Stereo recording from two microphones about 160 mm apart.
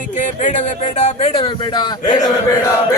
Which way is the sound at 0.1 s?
50° left (ahead or behind).